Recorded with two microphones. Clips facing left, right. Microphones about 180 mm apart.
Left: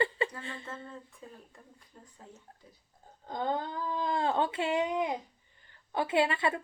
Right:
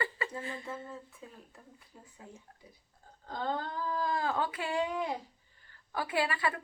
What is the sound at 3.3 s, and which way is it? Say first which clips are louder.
A woman's voice: left 2 dB; 20° left (ahead or behind).